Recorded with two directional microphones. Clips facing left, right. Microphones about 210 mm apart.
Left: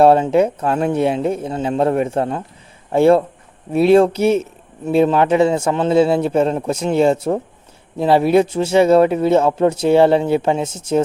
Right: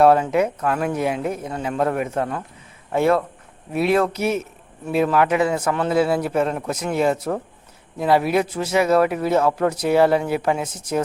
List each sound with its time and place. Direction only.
0.0 s a man's voice: 30° left (ahead or behind)